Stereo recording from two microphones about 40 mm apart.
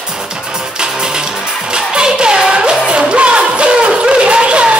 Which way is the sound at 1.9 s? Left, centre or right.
Right.